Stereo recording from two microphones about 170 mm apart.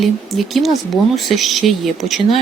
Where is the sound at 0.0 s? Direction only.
Centre (ahead or behind).